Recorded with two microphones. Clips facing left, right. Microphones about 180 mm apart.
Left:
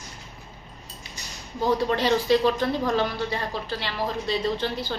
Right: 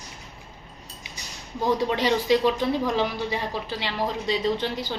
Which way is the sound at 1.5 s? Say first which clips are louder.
Even; 15° right (ahead or behind).